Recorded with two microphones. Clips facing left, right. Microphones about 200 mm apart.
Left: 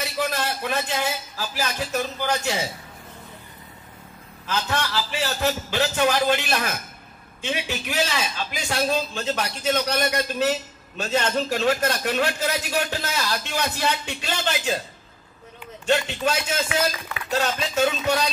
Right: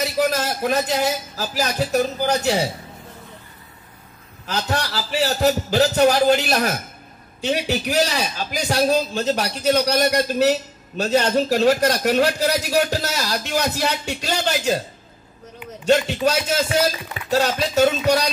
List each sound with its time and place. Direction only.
0.0 s a man's voice: 40° right (ahead or behind)
4.5 s a man's voice: 35° right (ahead or behind)
15.8 s a man's voice: 40° right (ahead or behind)